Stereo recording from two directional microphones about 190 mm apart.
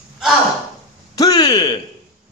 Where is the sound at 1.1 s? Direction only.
20° left (ahead or behind).